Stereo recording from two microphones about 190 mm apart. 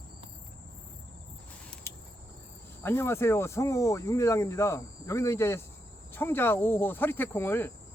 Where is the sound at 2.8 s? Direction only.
15° left (ahead or behind).